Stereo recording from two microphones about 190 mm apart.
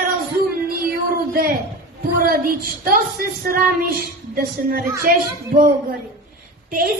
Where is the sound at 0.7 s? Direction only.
50° right (ahead or behind).